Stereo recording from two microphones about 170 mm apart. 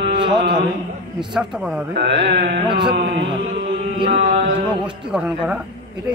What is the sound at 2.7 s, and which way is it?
Speech, 30° right (ahead or behind).